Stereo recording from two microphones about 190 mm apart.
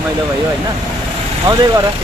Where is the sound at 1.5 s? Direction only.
20° right (ahead or behind).